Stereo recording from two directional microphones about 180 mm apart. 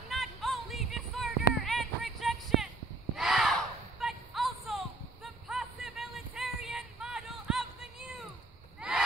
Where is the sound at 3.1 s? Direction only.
Centre (ahead or behind).